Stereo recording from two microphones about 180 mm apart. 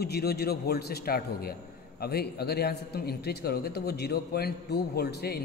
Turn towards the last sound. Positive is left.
turn(degrees=65)  # may be behind; listen again after turning